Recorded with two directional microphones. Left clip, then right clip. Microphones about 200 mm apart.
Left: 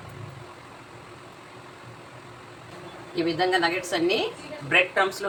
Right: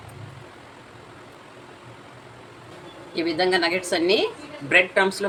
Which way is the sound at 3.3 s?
35° right (ahead or behind).